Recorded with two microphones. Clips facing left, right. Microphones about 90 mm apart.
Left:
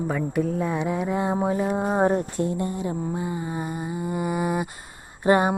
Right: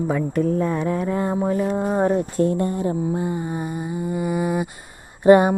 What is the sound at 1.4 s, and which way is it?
Music, 20° left (ahead or behind).